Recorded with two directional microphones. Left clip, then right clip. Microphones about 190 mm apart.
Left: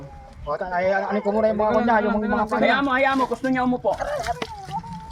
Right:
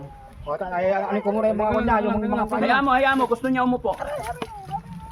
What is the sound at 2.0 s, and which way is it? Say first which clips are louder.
Speech: left 1 dB; 10° left (ahead or behind).